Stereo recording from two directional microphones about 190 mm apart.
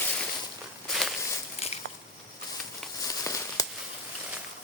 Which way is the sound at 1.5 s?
35° left (ahead or behind).